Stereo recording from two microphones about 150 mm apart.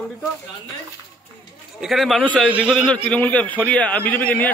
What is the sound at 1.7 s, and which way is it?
Speech, centre (ahead or behind).